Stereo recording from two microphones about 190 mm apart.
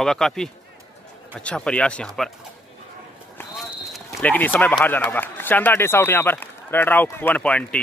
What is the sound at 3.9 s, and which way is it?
A man's voice, 10° left (ahead or behind).